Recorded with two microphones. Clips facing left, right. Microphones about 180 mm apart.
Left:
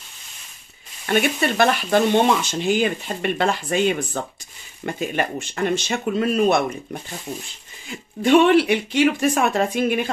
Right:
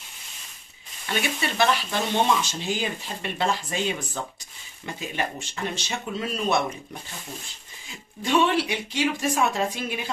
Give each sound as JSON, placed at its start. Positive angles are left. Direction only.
{"t": 1.0, "sound": "speech", "side_deg": 55}
{"t": 8.2, "sound": "speech", "side_deg": 60}